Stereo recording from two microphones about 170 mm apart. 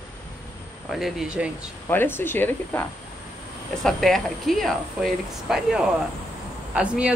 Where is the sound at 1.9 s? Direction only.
10° left (ahead or behind).